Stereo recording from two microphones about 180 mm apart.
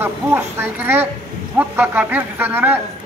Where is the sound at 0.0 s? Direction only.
10° right (ahead or behind).